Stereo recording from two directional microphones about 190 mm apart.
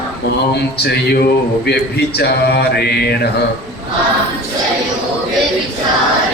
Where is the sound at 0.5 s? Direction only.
60° left (ahead or behind).